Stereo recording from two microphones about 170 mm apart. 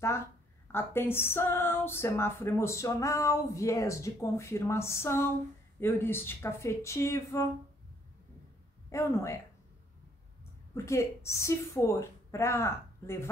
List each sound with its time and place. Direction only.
0.7 s speech: 15° left (ahead or behind)
8.9 s speech: 15° left (ahead or behind)
10.7 s speech: 15° left (ahead or behind)